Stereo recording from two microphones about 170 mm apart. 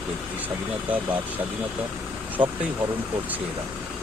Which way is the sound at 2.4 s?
30° right (ahead or behind).